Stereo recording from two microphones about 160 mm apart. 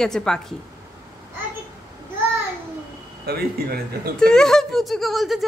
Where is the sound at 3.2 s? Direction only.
75° right (ahead or behind).